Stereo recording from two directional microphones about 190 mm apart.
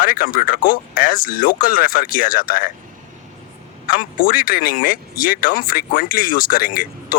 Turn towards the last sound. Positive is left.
turn(degrees=50)  # may be behind; listen again after turning